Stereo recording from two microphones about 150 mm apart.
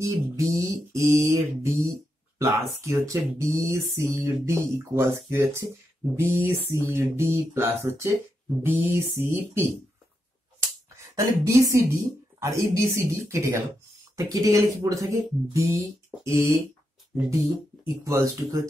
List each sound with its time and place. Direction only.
0.0 s mantra: 20° right (ahead or behind)
3.1 s speech: 20° right (ahead or behind)
11.1 s a woman's voice: 20° right (ahead or behind)